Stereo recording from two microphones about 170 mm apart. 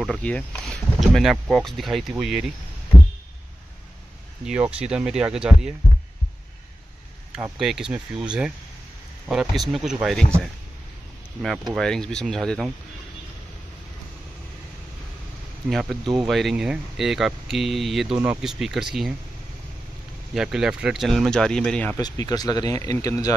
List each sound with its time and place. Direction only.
0.0 s speech: 5° left (ahead or behind)
4.5 s speech: 5° right (ahead or behind)
7.5 s speech: centre (ahead or behind)
11.4 s speech: centre (ahead or behind)
15.7 s speech: centre (ahead or behind)
20.3 s speech: 5° right (ahead or behind)
21.9 s speech: 20° left (ahead or behind)